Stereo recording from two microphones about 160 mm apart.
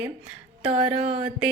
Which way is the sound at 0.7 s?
40° right (ahead or behind).